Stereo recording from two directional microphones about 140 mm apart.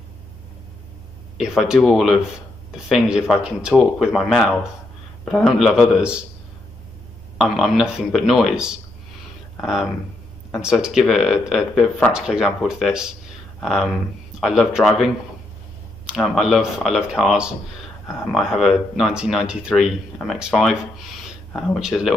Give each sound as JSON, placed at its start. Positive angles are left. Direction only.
{"t": 1.4, "sound": "speech", "side_deg": -5}
{"t": 7.3, "sound": "speech", "side_deg": 0}
{"t": 16.1, "sound": "speech", "side_deg": 0}